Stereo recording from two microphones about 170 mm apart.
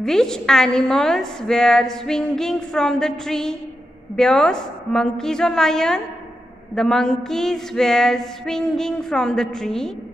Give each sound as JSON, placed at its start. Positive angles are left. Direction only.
{"t": 0.0, "sound": "a woman's voice", "side_deg": 5}